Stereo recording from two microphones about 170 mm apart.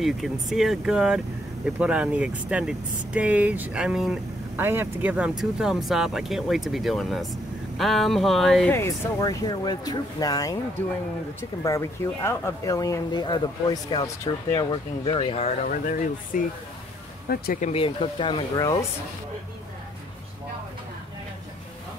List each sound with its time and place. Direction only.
0.0 s speech: centre (ahead or behind)
4.6 s speech: 15° right (ahead or behind)
8.7 s speech: 15° left (ahead or behind)
11.6 s speech: 20° left (ahead or behind)
15.6 s speech: 50° left (ahead or behind)
17.6 s speech: 40° left (ahead or behind); by 18.9 s 20° left (ahead or behind)